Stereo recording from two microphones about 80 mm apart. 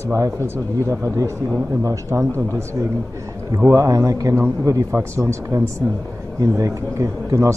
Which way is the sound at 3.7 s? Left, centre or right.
Right.